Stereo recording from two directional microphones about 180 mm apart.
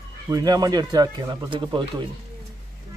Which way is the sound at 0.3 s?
20° right (ahead or behind).